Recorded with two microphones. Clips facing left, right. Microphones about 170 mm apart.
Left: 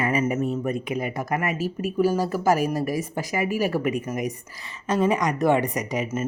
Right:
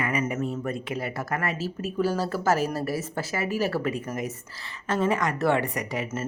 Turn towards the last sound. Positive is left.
turn(degrees=20)  # may be behind; listen again after turning